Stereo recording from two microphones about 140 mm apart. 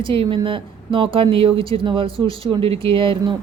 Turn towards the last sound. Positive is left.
turn(degrees=-40)  # may be behind; listen again after turning